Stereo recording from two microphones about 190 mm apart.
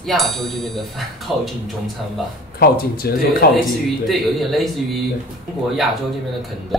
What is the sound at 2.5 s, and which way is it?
Speech, 55° left (ahead or behind).